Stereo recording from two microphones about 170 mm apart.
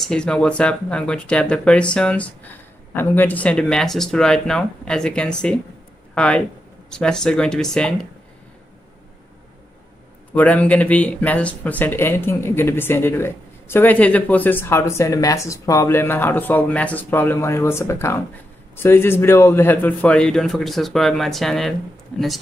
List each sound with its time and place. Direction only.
0.0 s speech: 5° left (ahead or behind)
10.3 s speech: 10° left (ahead or behind)